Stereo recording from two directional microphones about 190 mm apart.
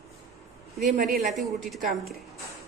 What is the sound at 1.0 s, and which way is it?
A woman's voice, centre (ahead or behind).